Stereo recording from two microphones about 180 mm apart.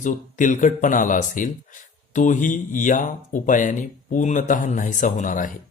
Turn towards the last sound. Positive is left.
turn(degrees=45)  # may be behind; listen again after turning